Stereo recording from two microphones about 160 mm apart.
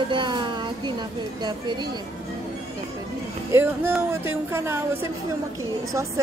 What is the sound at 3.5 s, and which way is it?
Speech, 15° right (ahead or behind).